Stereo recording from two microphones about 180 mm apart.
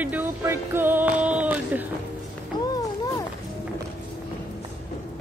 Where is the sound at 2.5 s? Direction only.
25° left (ahead or behind).